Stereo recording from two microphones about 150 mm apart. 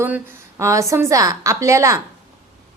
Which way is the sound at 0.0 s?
15° right (ahead or behind).